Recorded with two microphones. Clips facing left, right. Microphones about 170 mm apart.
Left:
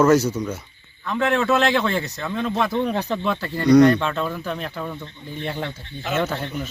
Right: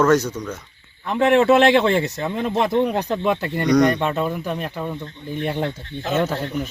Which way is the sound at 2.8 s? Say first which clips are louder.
Right 2 dB; 10° right (ahead or behind).